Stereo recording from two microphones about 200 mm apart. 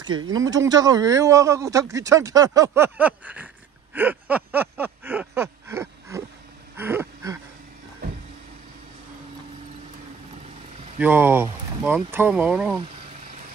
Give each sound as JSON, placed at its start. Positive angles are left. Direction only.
{"t": 0.3, "sound": "speech", "side_deg": -15}
{"t": 3.9, "sound": "a sound", "side_deg": -10}
{"t": 11.0, "sound": "speech", "side_deg": -10}